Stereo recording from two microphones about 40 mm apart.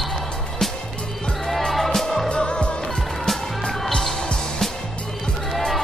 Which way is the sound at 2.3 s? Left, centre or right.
Left.